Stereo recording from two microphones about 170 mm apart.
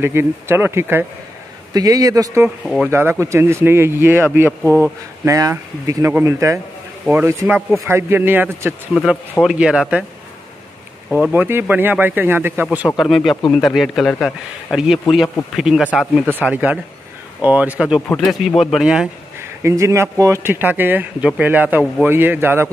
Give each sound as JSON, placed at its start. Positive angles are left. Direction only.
{"t": 0.0, "sound": "speech", "side_deg": -15}
{"t": 2.6, "sound": "speech", "side_deg": 0}
{"t": 2.9, "sound": "speech", "side_deg": -15}
{"t": 11.1, "sound": "speech", "side_deg": -5}
{"t": 19.6, "sound": "speech", "side_deg": -15}